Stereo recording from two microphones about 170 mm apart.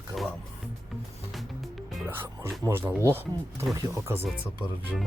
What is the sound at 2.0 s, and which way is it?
Speech, 15° right (ahead or behind).